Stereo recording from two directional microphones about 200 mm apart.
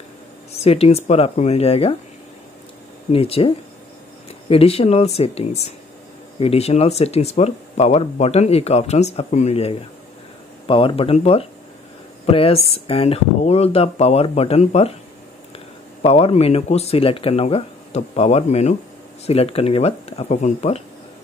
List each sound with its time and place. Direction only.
0.5 s speech: 30° left (ahead or behind)
3.1 s speech: 30° left (ahead or behind)
16.0 s speech: 30° left (ahead or behind)